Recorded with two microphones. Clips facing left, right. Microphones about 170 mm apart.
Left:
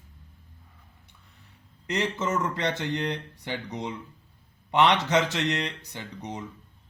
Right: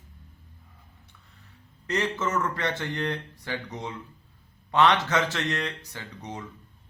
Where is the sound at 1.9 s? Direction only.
15° left (ahead or behind).